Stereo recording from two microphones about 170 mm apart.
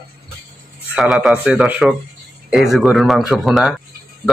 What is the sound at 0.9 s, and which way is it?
Speech, centre (ahead or behind).